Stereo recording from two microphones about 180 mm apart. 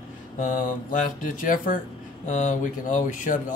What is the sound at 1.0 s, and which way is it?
Speech, 45° left (ahead or behind).